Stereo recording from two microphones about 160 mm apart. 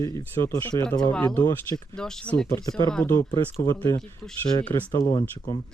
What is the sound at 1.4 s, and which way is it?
Speech, 20° left (ahead or behind).